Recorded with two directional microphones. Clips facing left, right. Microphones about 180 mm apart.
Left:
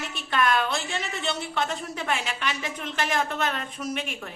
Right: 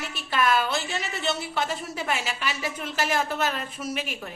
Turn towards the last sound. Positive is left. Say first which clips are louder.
# even
turn(degrees=-5)  # may be behind; listen again after turning